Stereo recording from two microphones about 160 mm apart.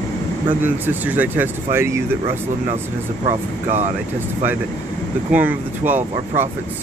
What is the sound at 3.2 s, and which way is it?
Speech, 45° right (ahead or behind).